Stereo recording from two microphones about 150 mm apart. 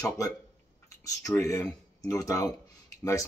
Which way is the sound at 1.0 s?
20° left (ahead or behind).